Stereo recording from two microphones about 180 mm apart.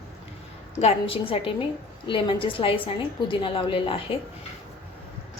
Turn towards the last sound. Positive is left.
turn(degrees=30)  # may be behind; listen again after turning